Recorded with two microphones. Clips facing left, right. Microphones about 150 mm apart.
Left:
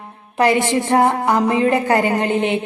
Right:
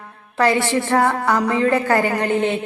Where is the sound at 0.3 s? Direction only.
15° left (ahead or behind).